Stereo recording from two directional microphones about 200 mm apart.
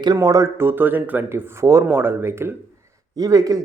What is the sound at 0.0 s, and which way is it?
Speech, 20° right (ahead or behind).